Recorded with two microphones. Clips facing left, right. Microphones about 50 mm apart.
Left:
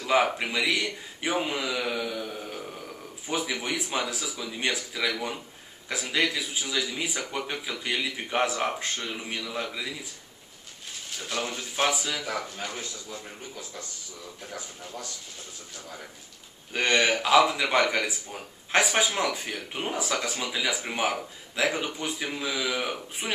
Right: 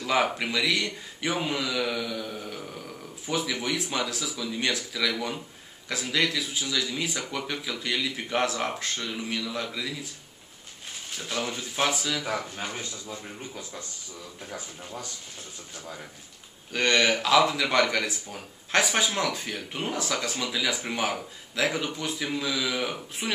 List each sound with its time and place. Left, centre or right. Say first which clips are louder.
0.0 s speech: left 1 dB; centre
11.3 s speech: even; centre
12.3 s speech: right 1 dB; centre
16.7 s speech: even; centre